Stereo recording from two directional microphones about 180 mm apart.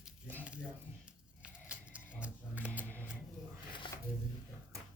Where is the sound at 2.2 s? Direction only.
10° right (ahead or behind).